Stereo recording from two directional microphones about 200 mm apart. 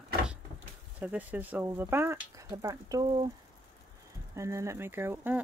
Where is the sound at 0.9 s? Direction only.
10° right (ahead or behind).